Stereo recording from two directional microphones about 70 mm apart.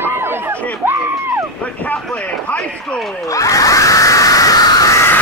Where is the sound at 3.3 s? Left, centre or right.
Left.